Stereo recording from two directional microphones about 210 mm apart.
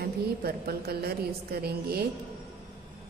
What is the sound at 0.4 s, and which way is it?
A woman's voice, 50° right (ahead or behind).